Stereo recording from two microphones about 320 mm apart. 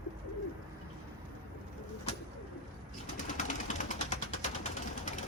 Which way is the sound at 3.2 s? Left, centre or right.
Left.